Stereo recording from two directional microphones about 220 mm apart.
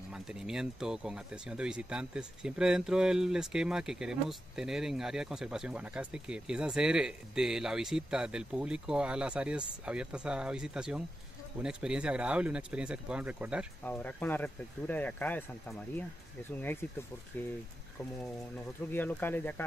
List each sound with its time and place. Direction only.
0.1 s speech: 5° right (ahead or behind)
13.8 s speech: 5° left (ahead or behind)
18.9 s speech: 10° left (ahead or behind)